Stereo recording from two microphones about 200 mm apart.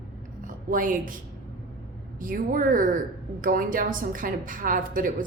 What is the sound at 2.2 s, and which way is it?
A woman's voice, 45° right (ahead or behind).